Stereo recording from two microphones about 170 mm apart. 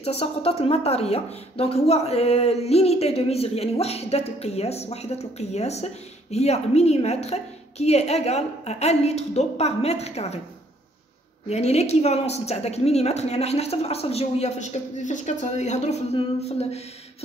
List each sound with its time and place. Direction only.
0.0 s a woman's voice: 35° left (ahead or behind)
11.4 s a woman's voice: 40° left (ahead or behind)